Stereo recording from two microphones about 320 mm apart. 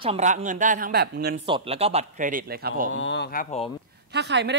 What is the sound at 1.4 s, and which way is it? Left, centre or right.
Speech, centre.